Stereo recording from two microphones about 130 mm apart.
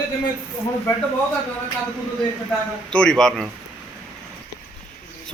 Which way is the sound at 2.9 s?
5° left (ahead or behind).